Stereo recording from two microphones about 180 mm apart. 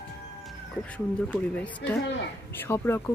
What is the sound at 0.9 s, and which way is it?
Speech, 10° left (ahead or behind).